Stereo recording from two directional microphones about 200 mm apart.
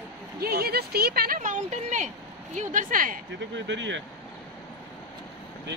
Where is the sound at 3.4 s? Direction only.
65° right (ahead or behind).